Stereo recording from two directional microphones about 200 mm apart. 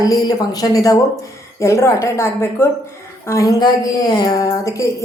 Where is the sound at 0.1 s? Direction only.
20° left (ahead or behind).